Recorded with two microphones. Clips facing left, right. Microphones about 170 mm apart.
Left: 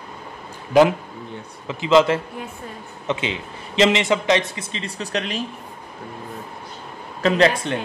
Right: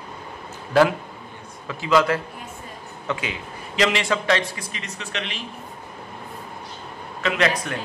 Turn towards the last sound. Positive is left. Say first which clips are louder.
# left 5 dB
turn(degrees=25)  # may be behind; listen again after turning